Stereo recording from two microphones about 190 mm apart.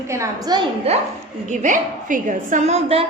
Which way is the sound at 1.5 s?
40° right (ahead or behind).